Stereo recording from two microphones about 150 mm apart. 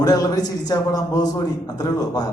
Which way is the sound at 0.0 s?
25° left (ahead or behind).